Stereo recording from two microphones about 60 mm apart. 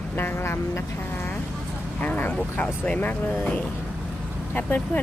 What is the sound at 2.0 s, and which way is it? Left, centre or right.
Vehicle, left.